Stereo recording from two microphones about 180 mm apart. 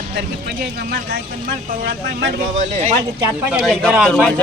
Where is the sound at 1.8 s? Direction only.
70° right (ahead or behind).